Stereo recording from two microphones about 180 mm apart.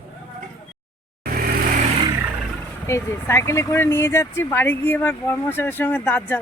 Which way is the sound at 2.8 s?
15° left (ahead or behind).